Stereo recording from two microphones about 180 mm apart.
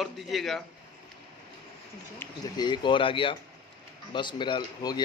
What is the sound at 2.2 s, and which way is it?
Speech, 20° left (ahead or behind).